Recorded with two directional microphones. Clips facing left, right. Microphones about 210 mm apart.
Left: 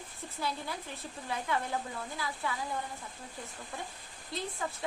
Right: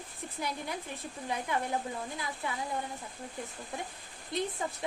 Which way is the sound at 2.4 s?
20° right (ahead or behind).